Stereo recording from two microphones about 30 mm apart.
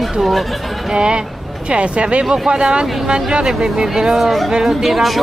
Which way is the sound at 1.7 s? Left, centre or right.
Right.